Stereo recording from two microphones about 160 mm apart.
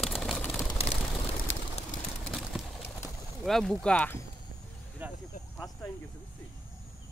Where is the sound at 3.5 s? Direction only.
Centre (ahead or behind).